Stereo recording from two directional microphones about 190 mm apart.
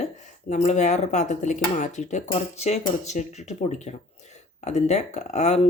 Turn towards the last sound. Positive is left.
turn(degrees=35)  # may be behind; listen again after turning